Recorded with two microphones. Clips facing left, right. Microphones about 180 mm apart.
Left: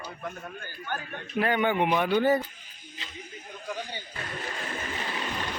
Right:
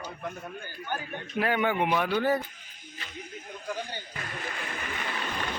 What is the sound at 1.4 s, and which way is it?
A man's voice, 5° right (ahead or behind).